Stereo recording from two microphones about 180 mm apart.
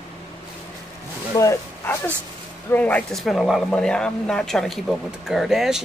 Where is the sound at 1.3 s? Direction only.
20° left (ahead or behind).